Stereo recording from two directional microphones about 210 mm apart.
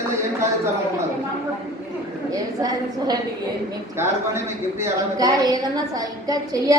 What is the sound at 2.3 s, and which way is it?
Speech, 20° right (ahead or behind).